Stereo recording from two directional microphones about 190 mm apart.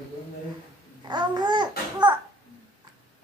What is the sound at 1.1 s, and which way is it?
Babbling, 20° right (ahead or behind).